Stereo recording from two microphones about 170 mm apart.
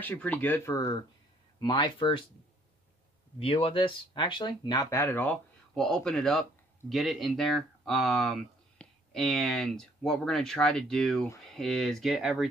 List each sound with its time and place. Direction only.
0.0 s speech: 10° left (ahead or behind)
1.6 s speech: 30° left (ahead or behind)
3.3 s speech: 35° left (ahead or behind); by 12.4 s centre (ahead or behind)